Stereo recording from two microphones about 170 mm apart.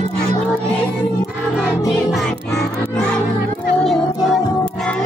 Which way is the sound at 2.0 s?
Centre (ahead or behind).